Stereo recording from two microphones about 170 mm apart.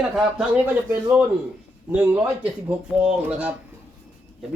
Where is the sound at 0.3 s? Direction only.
5° right (ahead or behind).